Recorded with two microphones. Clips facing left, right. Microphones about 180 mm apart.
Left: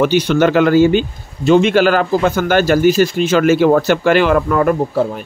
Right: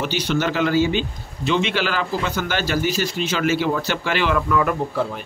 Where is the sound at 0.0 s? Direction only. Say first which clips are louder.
Left 10 dB; 55° left (ahead or behind).